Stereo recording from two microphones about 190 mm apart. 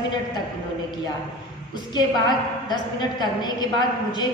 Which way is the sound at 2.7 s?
20° left (ahead or behind).